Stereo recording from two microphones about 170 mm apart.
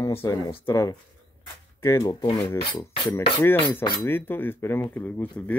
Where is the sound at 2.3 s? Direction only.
30° left (ahead or behind).